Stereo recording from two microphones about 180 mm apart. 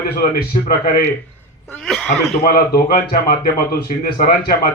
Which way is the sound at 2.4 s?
55° left (ahead or behind).